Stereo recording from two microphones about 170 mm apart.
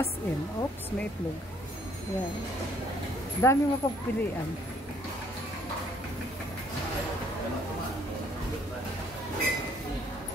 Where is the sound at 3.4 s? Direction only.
15° left (ahead or behind).